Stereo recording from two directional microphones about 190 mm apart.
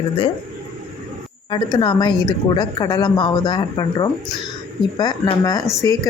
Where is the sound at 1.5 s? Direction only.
25° left (ahead or behind).